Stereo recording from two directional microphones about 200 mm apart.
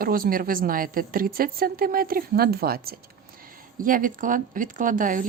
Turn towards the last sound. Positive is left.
turn(degrees=-40)  # may be behind; listen again after turning